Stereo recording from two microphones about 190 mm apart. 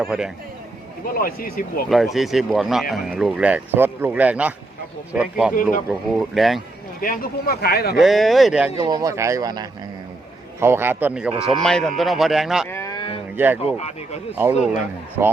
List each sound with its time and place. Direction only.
0.0 s speech: 5° right (ahead or behind)
1.0 s speech: 50° left (ahead or behind)
1.9 s speech: centre (ahead or behind)
7.0 s speech: 50° left (ahead or behind)
7.9 s speech: centre (ahead or behind)
8.8 s speech: 20° right (ahead or behind); by 12.6 s centre (ahead or behind)
12.6 s a sound: 15° left (ahead or behind)
13.3 s speech: 10° right (ahead or behind)
13.7 s speech: 35° left (ahead or behind)
14.3 s speech: 10° right (ahead or behind)